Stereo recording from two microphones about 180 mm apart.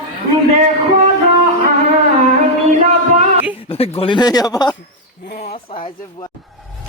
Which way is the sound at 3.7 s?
35° left (ahead or behind).